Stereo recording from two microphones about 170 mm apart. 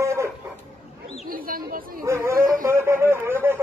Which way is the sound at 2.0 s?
15° right (ahead or behind).